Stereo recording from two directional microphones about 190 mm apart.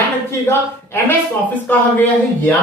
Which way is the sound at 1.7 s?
10° left (ahead or behind).